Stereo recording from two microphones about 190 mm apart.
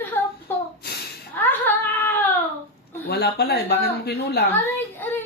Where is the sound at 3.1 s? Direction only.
60° left (ahead or behind).